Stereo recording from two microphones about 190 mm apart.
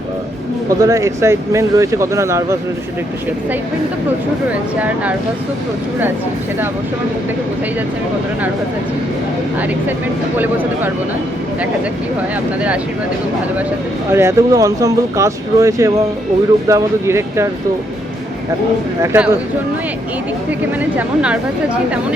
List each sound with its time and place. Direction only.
0.8 s speech: 15° right (ahead or behind)
10.3 s speech: 10° right (ahead or behind)
14.1 s speech: 15° right (ahead or behind)
19.0 s speech: 10° right (ahead or behind)
20.9 s speech: 5° right (ahead or behind)